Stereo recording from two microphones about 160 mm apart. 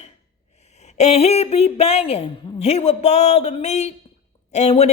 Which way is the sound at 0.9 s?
40° left (ahead or behind).